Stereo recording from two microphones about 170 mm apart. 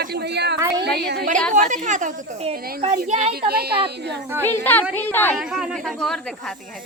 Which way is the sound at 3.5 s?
65° right (ahead or behind).